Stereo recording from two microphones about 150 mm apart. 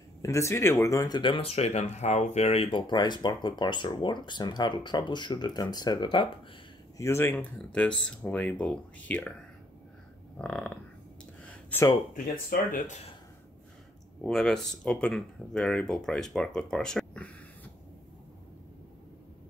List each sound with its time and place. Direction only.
0.2 s speech: 20° left (ahead or behind)
7.0 s speech: 15° left (ahead or behind)
10.4 s speech: 5° left (ahead or behind)
11.4 s a sound: 15° left (ahead or behind)
12.1 s speech: 60° left (ahead or behind)
14.2 s speech: 5° left (ahead or behind)